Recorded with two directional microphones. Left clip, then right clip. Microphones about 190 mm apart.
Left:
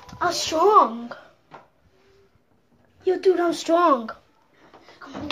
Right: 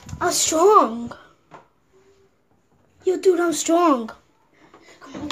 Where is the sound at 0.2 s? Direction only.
30° right (ahead or behind).